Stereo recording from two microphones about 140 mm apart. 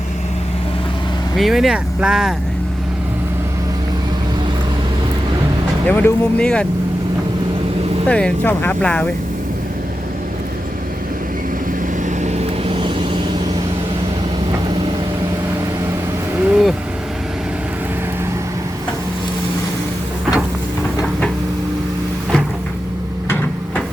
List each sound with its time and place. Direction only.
1.4 s speech: centre (ahead or behind)
5.9 s speech: 15° left (ahead or behind)
8.0 s speech: 10° left (ahead or behind)
12.2 s vehicle: 50° right (ahead or behind)
16.4 s vehicle: 5° right (ahead or behind)